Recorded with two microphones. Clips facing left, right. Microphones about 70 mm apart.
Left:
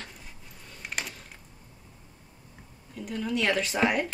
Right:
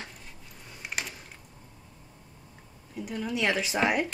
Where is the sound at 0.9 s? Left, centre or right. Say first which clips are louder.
Even; centre.